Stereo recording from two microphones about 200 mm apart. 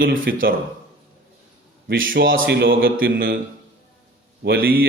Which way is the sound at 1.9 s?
75° right (ahead or behind).